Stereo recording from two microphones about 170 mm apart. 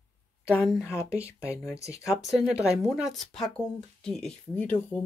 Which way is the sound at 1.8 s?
20° left (ahead or behind).